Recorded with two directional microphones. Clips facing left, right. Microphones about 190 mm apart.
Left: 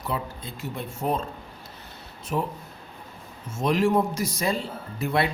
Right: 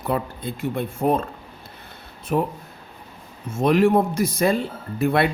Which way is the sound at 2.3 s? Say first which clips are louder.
Right 5 dB; 55° right (ahead or behind).